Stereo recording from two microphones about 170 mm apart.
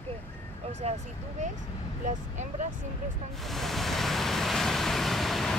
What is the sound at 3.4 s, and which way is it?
Vehicle, centre (ahead or behind).